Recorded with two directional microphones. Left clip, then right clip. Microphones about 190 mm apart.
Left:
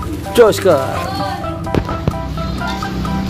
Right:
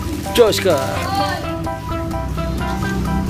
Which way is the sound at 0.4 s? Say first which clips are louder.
Left 4 dB; 25° left (ahead or behind).